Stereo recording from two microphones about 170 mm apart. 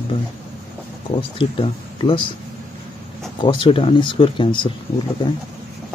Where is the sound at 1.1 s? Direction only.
30° left (ahead or behind).